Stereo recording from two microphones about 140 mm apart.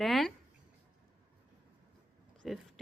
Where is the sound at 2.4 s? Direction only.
Centre (ahead or behind).